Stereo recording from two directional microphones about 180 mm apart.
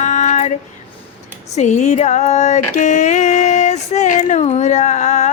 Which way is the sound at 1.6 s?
40° left (ahead or behind).